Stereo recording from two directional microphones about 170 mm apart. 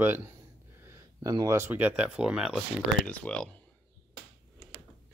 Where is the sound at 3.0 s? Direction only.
10° left (ahead or behind).